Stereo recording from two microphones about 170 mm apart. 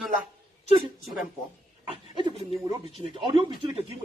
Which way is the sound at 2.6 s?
25° right (ahead or behind).